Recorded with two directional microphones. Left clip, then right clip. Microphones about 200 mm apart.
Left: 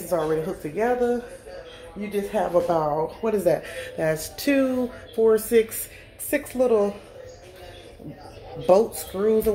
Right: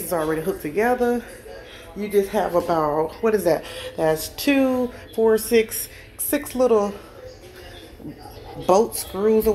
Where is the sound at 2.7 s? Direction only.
5° right (ahead or behind).